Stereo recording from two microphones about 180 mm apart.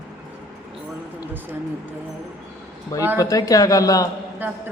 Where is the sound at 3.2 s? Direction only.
20° left (ahead or behind).